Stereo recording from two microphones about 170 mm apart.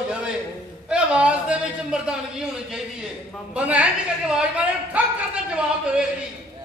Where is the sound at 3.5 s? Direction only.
5° right (ahead or behind).